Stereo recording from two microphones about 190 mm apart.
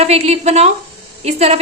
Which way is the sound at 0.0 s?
35° right (ahead or behind).